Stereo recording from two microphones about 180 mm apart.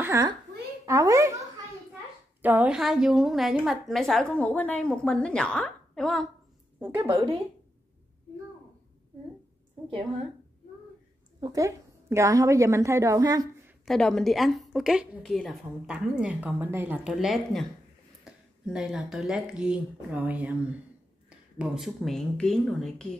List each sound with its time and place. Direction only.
0.0 s a sound: 15° right (ahead or behind)
0.8 s a child's voice: 15° right (ahead or behind)
2.4 s a woman's voice: 10° right (ahead or behind)
7.0 s speech: 25° right (ahead or behind)
11.4 s a woman's voice: 20° right (ahead or behind)
13.8 s a woman's voice: 5° left (ahead or behind)